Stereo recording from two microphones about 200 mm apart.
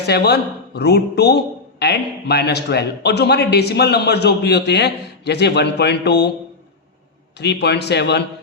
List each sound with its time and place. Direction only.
0.0 s a man's voice: 55° left (ahead or behind)
7.3 s a man's voice: 60° left (ahead or behind)